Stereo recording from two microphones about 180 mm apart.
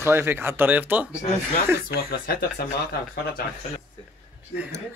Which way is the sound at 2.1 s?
60° left (ahead or behind).